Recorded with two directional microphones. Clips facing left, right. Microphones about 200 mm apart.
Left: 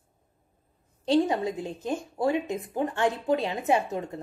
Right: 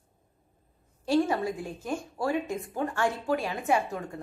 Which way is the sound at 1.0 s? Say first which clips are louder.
Left 2 dB; 20° left (ahead or behind).